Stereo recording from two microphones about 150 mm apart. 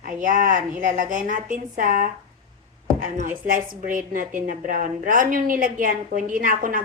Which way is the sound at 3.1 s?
65° right (ahead or behind).